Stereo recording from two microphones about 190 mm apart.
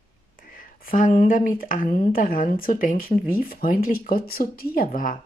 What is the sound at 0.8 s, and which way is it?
A woman's voice, 40° left (ahead or behind).